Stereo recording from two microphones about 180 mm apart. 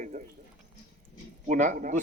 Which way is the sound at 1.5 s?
45° right (ahead or behind).